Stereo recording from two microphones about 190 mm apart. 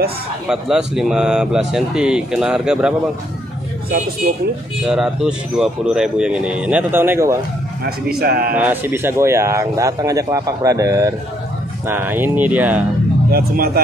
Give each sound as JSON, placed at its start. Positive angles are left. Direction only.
{"t": 0.5, "sound": "speech", "side_deg": -5}
{"t": 4.8, "sound": "speech", "side_deg": 0}
{"t": 7.8, "sound": "speech", "side_deg": -55}
{"t": 8.5, "sound": "speech", "side_deg": -10}
{"t": 13.3, "sound": "speech", "side_deg": -55}